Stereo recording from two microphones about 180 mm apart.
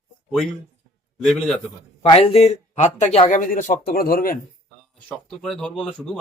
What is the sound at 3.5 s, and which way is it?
Speech, 50° left (ahead or behind).